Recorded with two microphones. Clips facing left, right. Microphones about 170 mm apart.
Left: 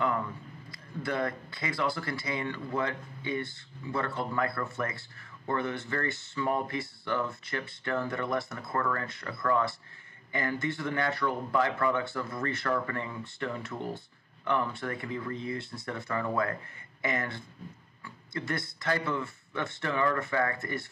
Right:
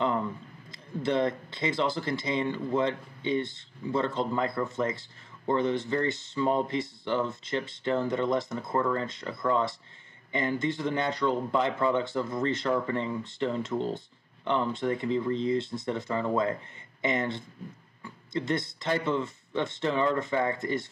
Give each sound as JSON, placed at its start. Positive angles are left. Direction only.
{"t": 1.0, "sound": "speech", "side_deg": -20}